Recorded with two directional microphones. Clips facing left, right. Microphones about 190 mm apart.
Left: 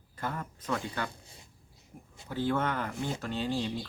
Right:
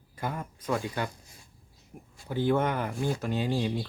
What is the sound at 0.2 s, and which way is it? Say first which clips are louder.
Speech: right 2 dB; 10° right (ahead or behind).